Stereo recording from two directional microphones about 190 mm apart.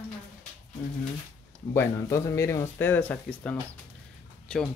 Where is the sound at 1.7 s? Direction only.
15° left (ahead or behind).